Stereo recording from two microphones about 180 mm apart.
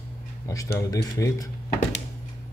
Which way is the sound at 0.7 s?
20° left (ahead or behind).